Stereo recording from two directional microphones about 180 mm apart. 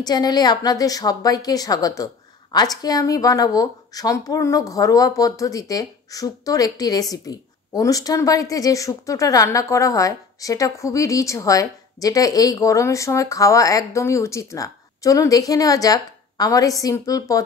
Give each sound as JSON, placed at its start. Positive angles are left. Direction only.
{"t": 0.0, "sound": "speech", "side_deg": 20}